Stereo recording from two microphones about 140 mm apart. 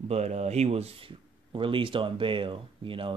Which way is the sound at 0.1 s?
50° right (ahead or behind).